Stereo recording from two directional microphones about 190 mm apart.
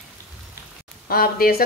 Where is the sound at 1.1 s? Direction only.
50° left (ahead or behind).